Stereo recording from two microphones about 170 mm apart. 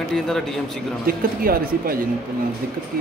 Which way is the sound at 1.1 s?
60° right (ahead or behind).